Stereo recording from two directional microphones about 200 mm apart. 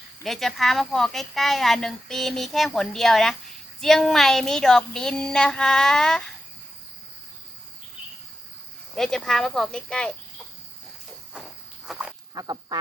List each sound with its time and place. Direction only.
0.3 s speech: centre (ahead or behind)
9.0 s speech: centre (ahead or behind)
11.9 s a sound: 5° right (ahead or behind)
12.3 s speech: 20° right (ahead or behind)